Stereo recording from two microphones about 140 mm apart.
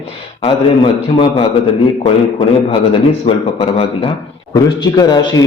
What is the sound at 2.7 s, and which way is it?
A man's voice, 40° left (ahead or behind).